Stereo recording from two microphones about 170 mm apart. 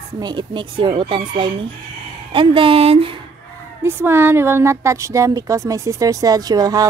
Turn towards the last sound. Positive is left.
turn(degrees=-20)  # may be behind; listen again after turning